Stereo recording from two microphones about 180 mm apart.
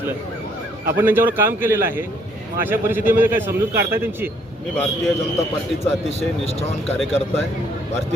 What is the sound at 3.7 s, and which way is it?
Speech, 60° right (ahead or behind).